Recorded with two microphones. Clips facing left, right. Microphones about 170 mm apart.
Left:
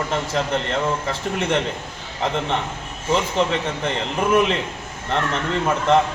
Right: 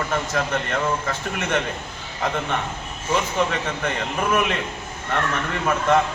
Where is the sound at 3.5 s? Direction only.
30° left (ahead or behind).